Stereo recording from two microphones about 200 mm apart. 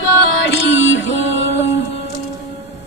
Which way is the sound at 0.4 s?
65° left (ahead or behind).